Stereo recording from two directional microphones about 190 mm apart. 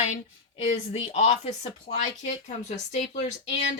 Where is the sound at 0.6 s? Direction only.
35° left (ahead or behind).